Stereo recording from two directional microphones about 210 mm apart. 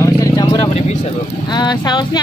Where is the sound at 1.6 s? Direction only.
20° left (ahead or behind).